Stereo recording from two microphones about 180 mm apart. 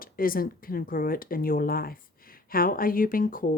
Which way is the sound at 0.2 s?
55° left (ahead or behind).